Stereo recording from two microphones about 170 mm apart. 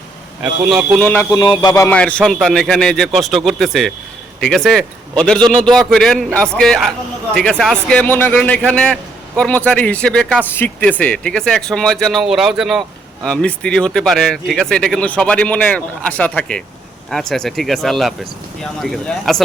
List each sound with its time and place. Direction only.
0.6 s a man's voice: 5° right (ahead or behind)
1.0 s speech: 15° left (ahead or behind)
1.4 s music: 25° left (ahead or behind)
1.9 s a man's voice: 5° left (ahead or behind)